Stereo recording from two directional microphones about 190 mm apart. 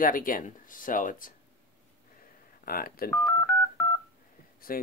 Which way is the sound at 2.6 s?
50° left (ahead or behind).